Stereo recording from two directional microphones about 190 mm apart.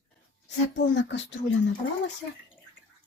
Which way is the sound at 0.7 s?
65° left (ahead or behind).